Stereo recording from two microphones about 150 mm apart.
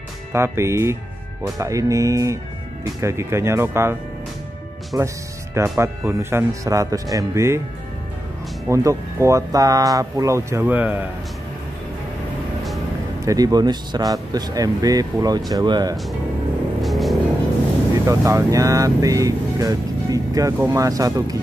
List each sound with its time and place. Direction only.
0.3 s speech: 15° right (ahead or behind)
4.9 s speech: 20° right (ahead or behind)
8.6 s speech: 20° right (ahead or behind)
13.2 s speech: 25° right (ahead or behind)
16.8 s music: centre (ahead or behind)
17.9 s speech: 20° right (ahead or behind)